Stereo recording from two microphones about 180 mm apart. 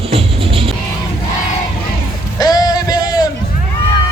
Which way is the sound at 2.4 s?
20° left (ahead or behind).